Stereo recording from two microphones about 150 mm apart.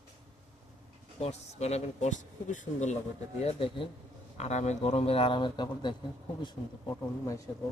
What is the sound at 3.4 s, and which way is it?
Speech, 35° left (ahead or behind).